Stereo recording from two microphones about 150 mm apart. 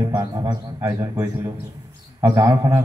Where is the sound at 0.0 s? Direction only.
25° right (ahead or behind).